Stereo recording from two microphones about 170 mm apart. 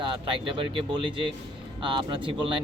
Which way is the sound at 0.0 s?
30° right (ahead or behind).